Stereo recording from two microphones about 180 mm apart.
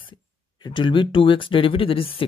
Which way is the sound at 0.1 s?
25° left (ahead or behind).